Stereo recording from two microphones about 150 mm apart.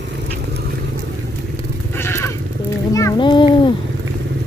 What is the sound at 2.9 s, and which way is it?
Speech, 20° left (ahead or behind).